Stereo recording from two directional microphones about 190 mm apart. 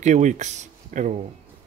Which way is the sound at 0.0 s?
40° right (ahead or behind).